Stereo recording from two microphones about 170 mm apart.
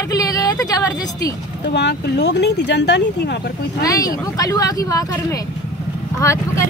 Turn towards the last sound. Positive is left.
turn(degrees=15)  # may be behind; listen again after turning